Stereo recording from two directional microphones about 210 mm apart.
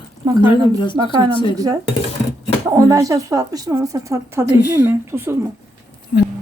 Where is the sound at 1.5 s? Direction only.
15° right (ahead or behind).